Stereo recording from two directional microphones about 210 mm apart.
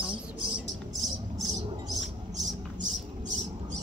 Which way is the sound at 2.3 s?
60° right (ahead or behind).